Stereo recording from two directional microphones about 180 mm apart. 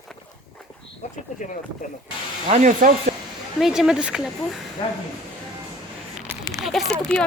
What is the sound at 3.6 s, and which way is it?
Speech, 5° right (ahead or behind).